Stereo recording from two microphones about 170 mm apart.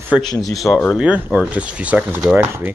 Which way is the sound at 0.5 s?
Centre (ahead or behind).